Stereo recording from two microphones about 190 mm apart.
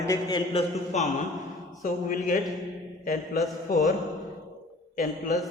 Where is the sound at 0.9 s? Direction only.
35° left (ahead or behind).